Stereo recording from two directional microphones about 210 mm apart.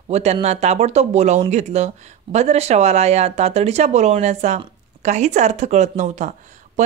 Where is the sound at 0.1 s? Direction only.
30° right (ahead or behind).